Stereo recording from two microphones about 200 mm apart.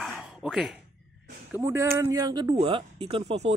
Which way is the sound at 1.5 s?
15° right (ahead or behind).